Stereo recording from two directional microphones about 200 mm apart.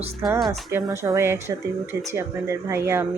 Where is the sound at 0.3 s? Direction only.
Centre (ahead or behind).